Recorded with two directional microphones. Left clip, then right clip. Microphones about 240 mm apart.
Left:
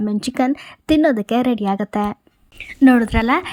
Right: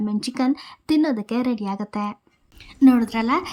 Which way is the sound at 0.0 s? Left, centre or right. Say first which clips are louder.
Left 4 dB; centre.